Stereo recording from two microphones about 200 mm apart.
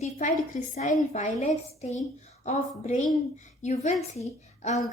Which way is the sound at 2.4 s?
35° left (ahead or behind).